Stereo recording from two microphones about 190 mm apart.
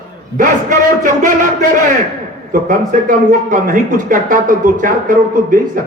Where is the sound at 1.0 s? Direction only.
45° right (ahead or behind).